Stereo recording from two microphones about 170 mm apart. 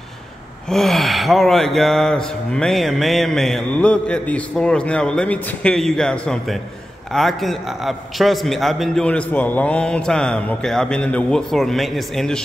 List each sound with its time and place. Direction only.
0.7 s gasp: centre (ahead or behind)